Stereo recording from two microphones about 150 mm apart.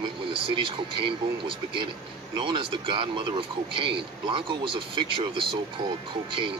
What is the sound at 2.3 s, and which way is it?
Speech, 35° right (ahead or behind).